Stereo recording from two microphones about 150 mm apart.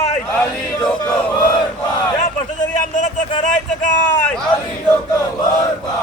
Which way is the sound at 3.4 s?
60° left (ahead or behind).